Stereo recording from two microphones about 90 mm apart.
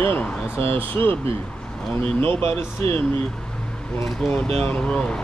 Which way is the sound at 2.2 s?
85° right.